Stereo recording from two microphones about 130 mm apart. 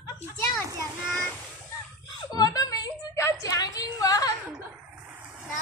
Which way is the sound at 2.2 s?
30° left (ahead or behind).